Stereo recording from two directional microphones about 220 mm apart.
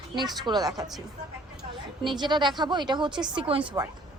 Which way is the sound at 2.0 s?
20° right (ahead or behind).